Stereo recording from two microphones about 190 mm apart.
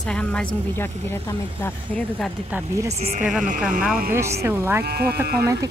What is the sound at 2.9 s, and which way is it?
Speech, 35° right (ahead or behind).